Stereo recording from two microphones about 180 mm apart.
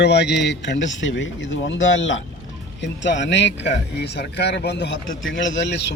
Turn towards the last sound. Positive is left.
turn(degrees=75)  # may be behind; listen again after turning